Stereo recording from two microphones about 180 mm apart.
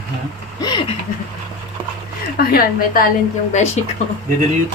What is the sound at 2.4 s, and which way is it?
Speech, 55° left (ahead or behind).